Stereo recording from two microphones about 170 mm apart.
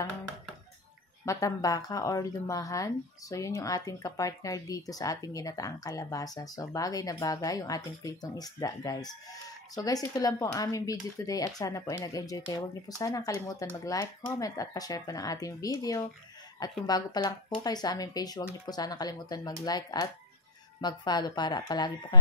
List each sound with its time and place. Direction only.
1.2 s speech: 20° left (ahead or behind)